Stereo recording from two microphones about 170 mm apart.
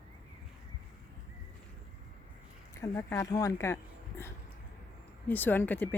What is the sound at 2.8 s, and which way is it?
Speech, 15° left (ahead or behind).